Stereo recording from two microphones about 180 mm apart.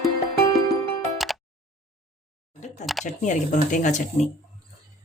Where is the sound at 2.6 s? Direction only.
40° left (ahead or behind).